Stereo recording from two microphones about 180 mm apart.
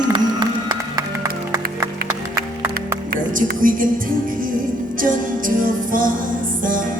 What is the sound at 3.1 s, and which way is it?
Speech, 50° right (ahead or behind).